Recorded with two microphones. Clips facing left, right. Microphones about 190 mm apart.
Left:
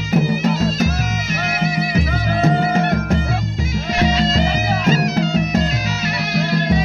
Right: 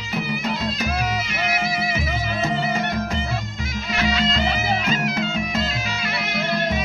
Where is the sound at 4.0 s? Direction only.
40° left (ahead or behind).